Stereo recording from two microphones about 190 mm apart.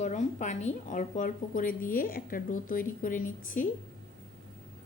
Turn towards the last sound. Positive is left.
turn(degrees=45)  # may be behind; listen again after turning